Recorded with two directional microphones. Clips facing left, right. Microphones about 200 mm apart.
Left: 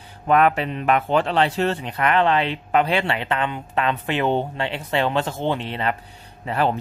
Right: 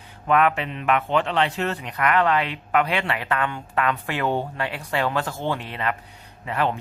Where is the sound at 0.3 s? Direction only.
35° left (ahead or behind).